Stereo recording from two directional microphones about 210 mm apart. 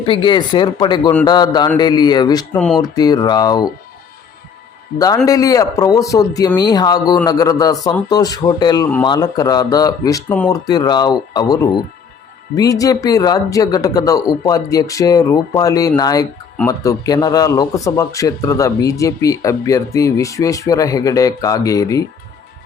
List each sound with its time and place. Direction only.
0.0 s speech: 25° left (ahead or behind)
4.9 s speech: 15° left (ahead or behind)